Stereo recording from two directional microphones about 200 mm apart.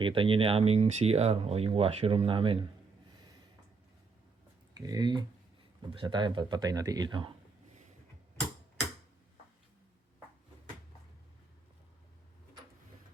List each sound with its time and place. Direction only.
0.0 s speech: 25° right (ahead or behind)
4.7 s speech: 20° right (ahead or behind)